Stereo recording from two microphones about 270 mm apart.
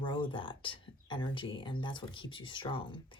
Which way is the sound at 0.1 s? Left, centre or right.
Centre.